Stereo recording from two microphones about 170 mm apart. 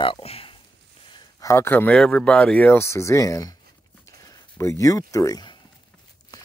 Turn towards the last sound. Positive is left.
turn(degrees=25)  # may be behind; listen again after turning